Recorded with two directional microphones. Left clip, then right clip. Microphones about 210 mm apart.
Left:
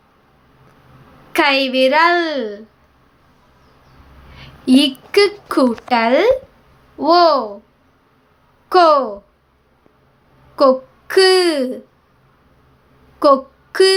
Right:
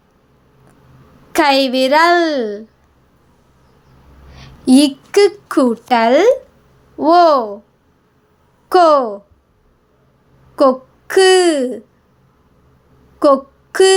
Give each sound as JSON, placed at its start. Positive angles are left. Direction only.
{"t": 1.3, "sound": "a woman's voice", "side_deg": -25}
{"t": 4.4, "sound": "a woman's voice", "side_deg": -20}
{"t": 8.7, "sound": "a woman's voice", "side_deg": -20}
{"t": 10.5, "sound": "speech", "side_deg": -15}
{"t": 13.1, "sound": "a sound", "side_deg": -15}